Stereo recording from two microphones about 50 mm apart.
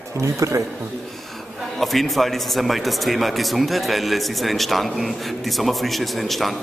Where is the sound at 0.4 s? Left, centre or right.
Right.